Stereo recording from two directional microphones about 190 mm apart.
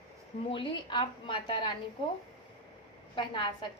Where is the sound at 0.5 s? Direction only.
25° left (ahead or behind).